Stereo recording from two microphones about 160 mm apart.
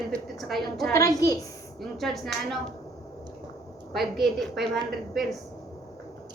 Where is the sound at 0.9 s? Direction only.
20° left (ahead or behind).